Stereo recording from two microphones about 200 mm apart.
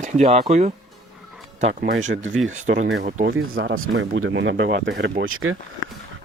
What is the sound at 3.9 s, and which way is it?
Speech, 70° right (ahead or behind).